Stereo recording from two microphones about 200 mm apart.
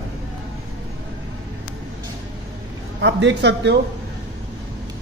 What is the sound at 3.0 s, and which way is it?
Speech, 60° right (ahead or behind).